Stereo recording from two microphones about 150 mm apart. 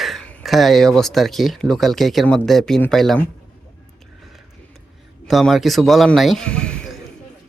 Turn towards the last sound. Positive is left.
turn(degrees=5)  # may be behind; listen again after turning